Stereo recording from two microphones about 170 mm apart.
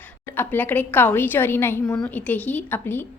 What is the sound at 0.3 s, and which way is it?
A woman's voice, 10° left (ahead or behind).